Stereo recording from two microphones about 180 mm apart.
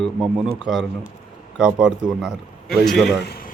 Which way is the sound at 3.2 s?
55° left (ahead or behind).